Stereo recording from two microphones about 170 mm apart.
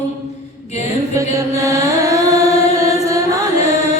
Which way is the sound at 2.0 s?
20° right (ahead or behind).